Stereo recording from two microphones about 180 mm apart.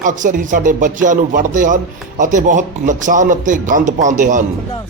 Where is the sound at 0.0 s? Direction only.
45° right (ahead or behind).